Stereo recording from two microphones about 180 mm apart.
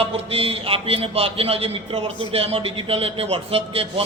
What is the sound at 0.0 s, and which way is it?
A man's voice, 30° right (ahead or behind).